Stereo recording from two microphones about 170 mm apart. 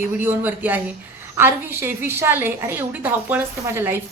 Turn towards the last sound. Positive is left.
turn(degrees=-15)  # may be behind; listen again after turning